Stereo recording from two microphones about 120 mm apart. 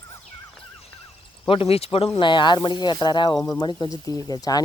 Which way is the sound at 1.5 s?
55° left (ahead or behind).